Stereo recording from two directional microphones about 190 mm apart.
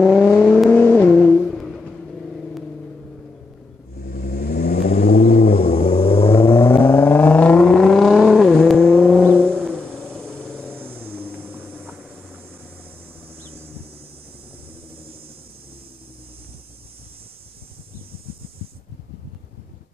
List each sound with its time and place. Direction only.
0.0 s vehicle: 5° right (ahead or behind)
0.3 s vehicle: 5° left (ahead or behind)
4.0 s vehicle: 50° left (ahead or behind); by 6.3 s 30° left (ahead or behind)
6.3 s vehicle: 20° left (ahead or behind)
10.2 s vehicle: 10° right (ahead or behind)
13.5 s vehicle: 30° right (ahead or behind)